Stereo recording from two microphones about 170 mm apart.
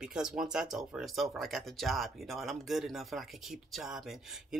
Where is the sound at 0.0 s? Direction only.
5° right (ahead or behind).